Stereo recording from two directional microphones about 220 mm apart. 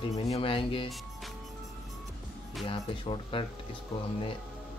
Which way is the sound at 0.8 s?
Centre (ahead or behind).